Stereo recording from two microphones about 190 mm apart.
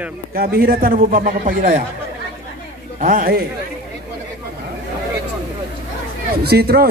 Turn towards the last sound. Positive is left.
turn(degrees=-55)  # may be behind; listen again after turning